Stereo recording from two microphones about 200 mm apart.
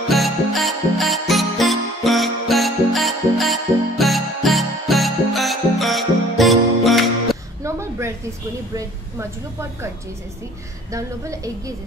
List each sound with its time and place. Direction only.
0.1 s music: centre (ahead or behind)
8.7 s a woman's voice: 15° right (ahead or behind)
10.9 s a woman's voice: 15° right (ahead or behind)